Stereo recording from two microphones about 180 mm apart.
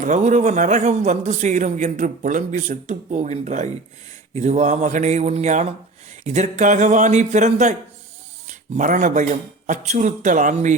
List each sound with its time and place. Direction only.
0.0 s a man's voice: 40° right (ahead or behind)